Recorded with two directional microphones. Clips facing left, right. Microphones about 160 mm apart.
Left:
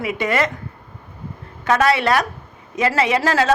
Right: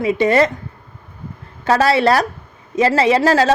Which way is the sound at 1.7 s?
35° right (ahead or behind).